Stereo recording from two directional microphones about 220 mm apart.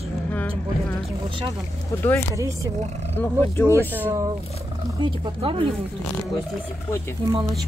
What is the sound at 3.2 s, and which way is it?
Speech, 10° left (ahead or behind).